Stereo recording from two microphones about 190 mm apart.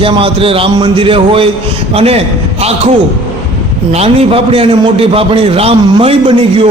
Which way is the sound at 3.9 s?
30° right (ahead or behind).